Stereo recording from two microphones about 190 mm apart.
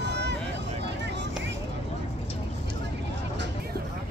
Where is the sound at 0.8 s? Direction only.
65° right (ahead or behind).